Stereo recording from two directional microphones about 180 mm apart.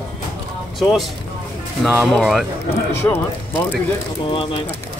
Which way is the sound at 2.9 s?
10° left (ahead or behind).